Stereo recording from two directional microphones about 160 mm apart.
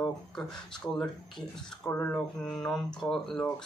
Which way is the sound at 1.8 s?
15° left (ahead or behind).